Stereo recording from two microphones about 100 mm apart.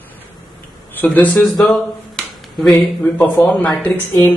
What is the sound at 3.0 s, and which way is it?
A man's voice, 20° left (ahead or behind).